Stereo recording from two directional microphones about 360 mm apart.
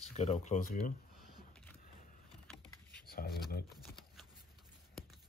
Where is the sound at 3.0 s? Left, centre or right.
Left.